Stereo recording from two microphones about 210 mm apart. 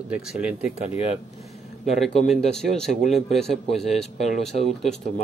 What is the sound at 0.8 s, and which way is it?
Speech, 30° left (ahead or behind).